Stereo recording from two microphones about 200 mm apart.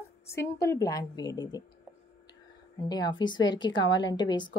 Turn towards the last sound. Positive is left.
turn(degrees=20)  # may be behind; listen again after turning